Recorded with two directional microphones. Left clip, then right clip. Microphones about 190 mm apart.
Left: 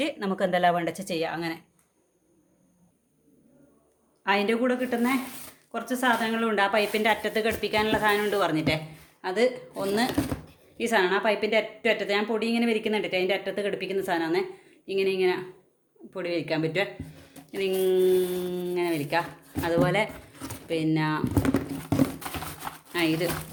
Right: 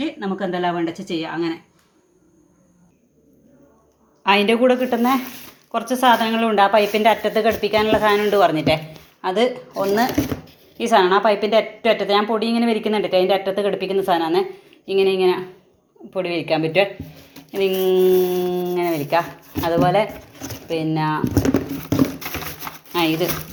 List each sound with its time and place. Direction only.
0.0 s speech: 40° left (ahead or behind)
4.2 s a woman's voice: 10° right (ahead or behind)
9.8 s speech: 15° left (ahead or behind)
10.8 s a woman's voice: 5° left (ahead or behind)
19.6 s speech: 10° left (ahead or behind)
22.9 s speech: centre (ahead or behind)